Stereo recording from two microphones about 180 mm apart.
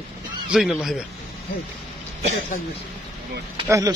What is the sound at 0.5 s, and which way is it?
Speech, 5° right (ahead or behind).